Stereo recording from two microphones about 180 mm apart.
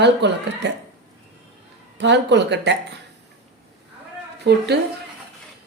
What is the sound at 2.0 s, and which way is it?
Speech, 75° right (ahead or behind).